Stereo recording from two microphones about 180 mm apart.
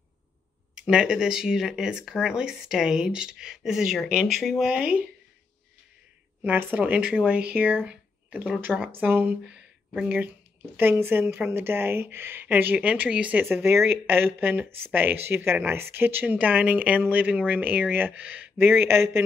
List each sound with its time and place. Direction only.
0.8 s speech: 5° right (ahead or behind)
6.4 s speech: 10° right (ahead or behind)